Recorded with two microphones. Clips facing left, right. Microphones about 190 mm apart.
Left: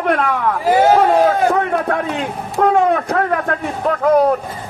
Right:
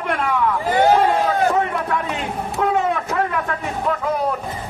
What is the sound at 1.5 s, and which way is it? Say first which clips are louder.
Speech: left 3 dB; 55° left (ahead or behind).